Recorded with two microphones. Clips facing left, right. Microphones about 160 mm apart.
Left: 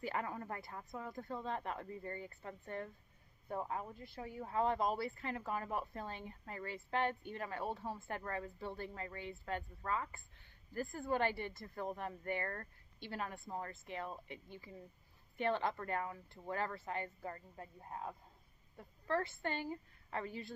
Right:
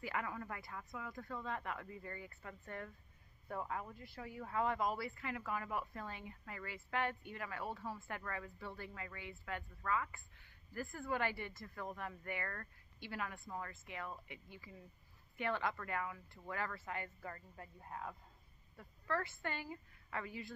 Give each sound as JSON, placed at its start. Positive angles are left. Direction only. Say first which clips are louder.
{"t": 0.0, "sound": "a woman's voice", "louder": "left 2 dB", "side_deg": 35}